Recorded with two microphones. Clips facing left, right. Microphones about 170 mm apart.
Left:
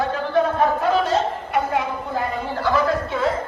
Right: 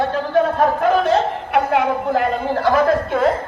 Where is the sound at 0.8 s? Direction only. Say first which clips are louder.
Right 4 dB; 60° right (ahead or behind).